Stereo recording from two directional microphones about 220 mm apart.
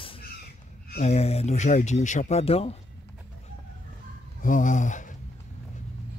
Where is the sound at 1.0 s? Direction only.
30° left (ahead or behind).